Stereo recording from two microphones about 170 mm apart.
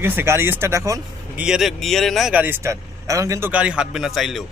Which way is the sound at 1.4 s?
5° right (ahead or behind).